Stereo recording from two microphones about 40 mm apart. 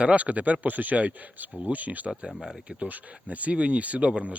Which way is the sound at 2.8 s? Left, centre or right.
Right.